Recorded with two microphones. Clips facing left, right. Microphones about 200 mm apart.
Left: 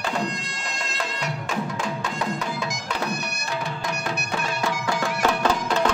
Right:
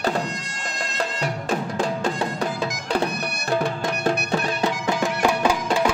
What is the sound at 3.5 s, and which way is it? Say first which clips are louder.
Music: right 7 dB; 55° right (ahead or behind).